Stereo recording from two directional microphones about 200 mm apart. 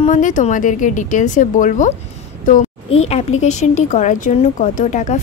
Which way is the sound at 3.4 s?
35° left (ahead or behind).